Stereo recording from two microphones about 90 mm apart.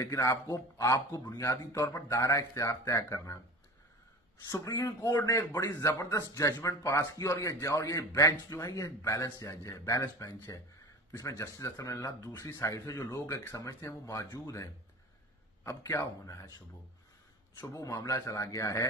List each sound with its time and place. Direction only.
0.0 s a man's voice: 35° left (ahead or behind)
4.5 s a man's voice: 40° left (ahead or behind)
5.1 s a man's voice: 30° left (ahead or behind)
12.4 s speech: 30° left (ahead or behind)
12.7 s a man's voice: 40° left (ahead or behind)